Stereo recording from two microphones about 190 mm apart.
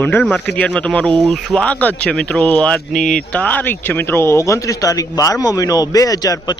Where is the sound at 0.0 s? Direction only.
10° left (ahead or behind).